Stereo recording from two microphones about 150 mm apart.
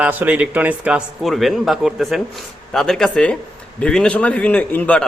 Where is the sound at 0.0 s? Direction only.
10° right (ahead or behind).